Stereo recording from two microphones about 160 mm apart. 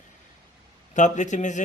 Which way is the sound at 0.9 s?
50° left (ahead or behind).